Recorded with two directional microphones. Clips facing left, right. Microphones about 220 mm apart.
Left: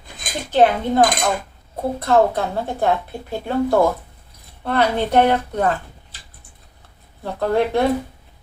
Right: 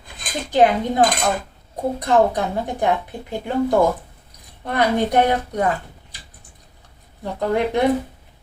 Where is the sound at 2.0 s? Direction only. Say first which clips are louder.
Left 1 dB; 15° right (ahead or behind).